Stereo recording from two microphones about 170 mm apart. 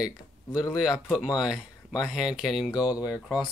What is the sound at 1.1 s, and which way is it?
Speech, 5° right (ahead or behind).